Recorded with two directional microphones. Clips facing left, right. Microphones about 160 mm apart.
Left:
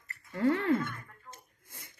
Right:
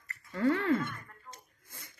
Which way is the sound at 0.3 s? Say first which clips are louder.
Left 1 dB; 20° left (ahead or behind).